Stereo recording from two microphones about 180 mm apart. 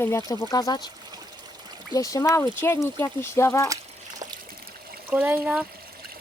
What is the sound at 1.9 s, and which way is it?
Speech, 20° left (ahead or behind).